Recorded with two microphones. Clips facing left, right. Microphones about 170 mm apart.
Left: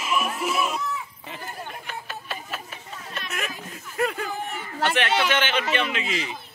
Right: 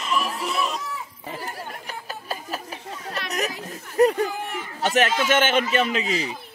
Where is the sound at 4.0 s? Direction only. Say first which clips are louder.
Right 8 dB; 40° right (ahead or behind).